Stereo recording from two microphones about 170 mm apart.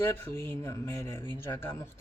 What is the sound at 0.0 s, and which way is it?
Speech, 15° left (ahead or behind).